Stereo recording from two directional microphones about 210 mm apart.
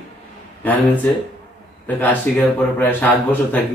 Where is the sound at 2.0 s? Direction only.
10° left (ahead or behind).